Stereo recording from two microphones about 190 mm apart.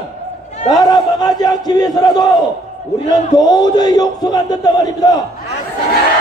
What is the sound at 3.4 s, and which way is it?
A man's voice, 20° left (ahead or behind).